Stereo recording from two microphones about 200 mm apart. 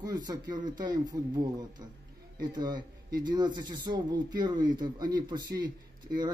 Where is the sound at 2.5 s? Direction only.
20° right (ahead or behind).